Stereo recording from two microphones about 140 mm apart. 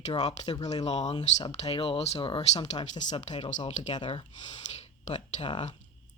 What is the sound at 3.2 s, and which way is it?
Speech, 55° left (ahead or behind).